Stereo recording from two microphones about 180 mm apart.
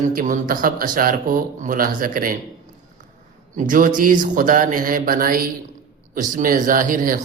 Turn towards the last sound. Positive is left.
turn(degrees=-50)  # may be behind; listen again after turning